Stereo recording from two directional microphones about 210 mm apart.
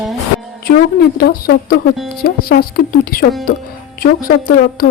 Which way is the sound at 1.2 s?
45° left (ahead or behind).